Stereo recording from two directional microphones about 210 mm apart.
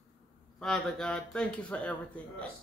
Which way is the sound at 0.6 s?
5° left (ahead or behind).